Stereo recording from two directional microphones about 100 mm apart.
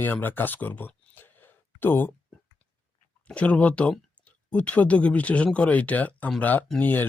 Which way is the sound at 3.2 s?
10° left (ahead or behind).